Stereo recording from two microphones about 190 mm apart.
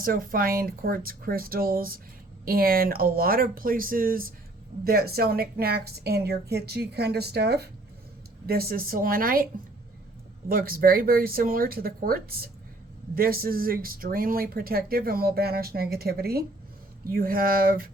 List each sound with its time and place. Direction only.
0.0 s a woman's voice: 50° right (ahead or behind)
10.5 s speech: 50° right (ahead or behind)